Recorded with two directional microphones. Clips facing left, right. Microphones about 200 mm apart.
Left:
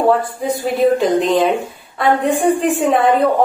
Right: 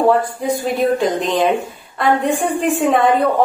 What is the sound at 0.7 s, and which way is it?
A woman's voice, centre (ahead or behind).